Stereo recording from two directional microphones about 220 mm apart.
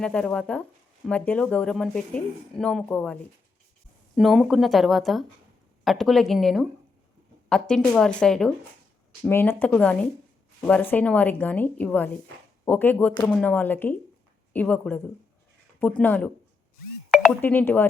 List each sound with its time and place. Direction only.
0.0 s a woman's voice: 5° left (ahead or behind)